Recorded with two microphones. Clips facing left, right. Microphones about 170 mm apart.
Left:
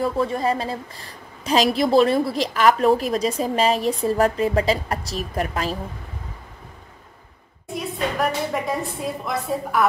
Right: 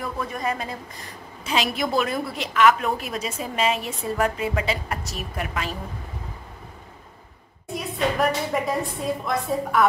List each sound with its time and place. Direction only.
0.0 s a woman's voice: 30° left (ahead or behind)
7.6 s a woman's voice: centre (ahead or behind)